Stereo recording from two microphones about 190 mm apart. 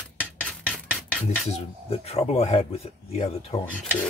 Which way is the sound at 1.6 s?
35° left (ahead or behind).